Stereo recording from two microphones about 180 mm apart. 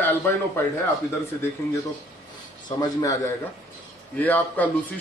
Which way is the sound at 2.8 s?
20° left (ahead or behind).